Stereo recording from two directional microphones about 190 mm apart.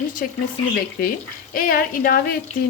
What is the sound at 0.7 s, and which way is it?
A woman's voice, 50° left (ahead or behind).